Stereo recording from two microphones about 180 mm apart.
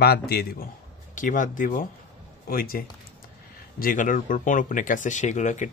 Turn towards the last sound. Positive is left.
turn(degrees=40)  # may be behind; listen again after turning